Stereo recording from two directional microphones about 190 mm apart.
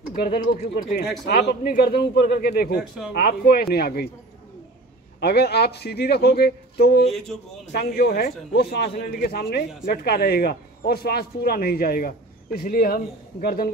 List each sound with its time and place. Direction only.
0.1 s speech: 50° left (ahead or behind)
0.6 s speech: 40° left (ahead or behind)
1.2 s a man's voice: 55° left (ahead or behind)
5.2 s a man's voice: 60° left (ahead or behind)